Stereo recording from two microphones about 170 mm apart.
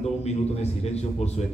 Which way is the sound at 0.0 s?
40° left (ahead or behind).